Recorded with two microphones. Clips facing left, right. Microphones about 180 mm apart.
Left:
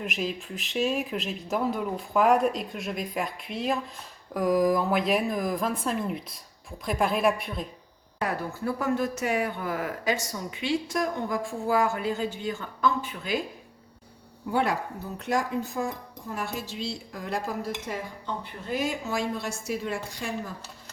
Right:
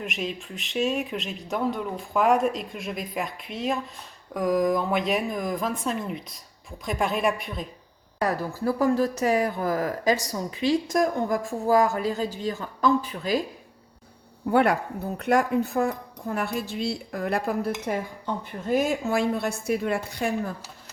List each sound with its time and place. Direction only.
0.0 s speech: centre (ahead or behind)
8.2 s speech: 35° right (ahead or behind)
14.5 s speech: 60° right (ahead or behind)